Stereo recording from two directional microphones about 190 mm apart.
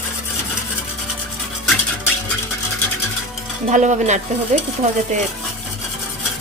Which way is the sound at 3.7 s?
40° right (ahead or behind).